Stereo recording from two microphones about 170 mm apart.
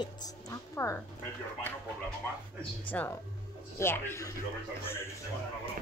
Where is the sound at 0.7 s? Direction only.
15° left (ahead or behind).